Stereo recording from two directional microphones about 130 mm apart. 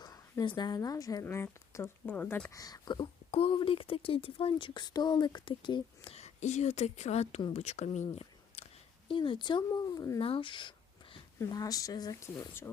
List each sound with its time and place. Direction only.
0.0 s a woman's voice: 30° left (ahead or behind)
3.3 s speech: 45° left (ahead or behind)
6.1 s speech: 60° left (ahead or behind)
8.1 s a sound: 50° left (ahead or behind)
9.0 s speech: 40° left (ahead or behind)
10.2 s a sound: 45° left (ahead or behind)
11.3 s a woman's voice: 25° left (ahead or behind)